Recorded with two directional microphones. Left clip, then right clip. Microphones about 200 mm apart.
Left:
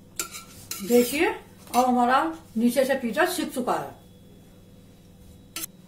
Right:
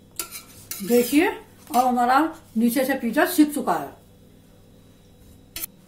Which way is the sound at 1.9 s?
45° right (ahead or behind).